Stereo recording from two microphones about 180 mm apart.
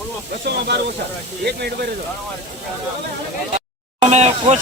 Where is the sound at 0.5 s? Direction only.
65° right (ahead or behind).